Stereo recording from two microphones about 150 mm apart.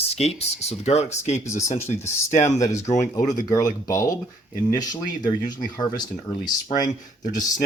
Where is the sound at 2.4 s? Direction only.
20° left (ahead or behind).